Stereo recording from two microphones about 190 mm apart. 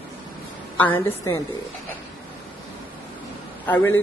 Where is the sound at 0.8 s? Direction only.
10° left (ahead or behind).